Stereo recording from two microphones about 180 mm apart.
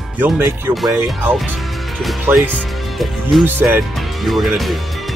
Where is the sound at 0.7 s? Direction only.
Centre (ahead or behind).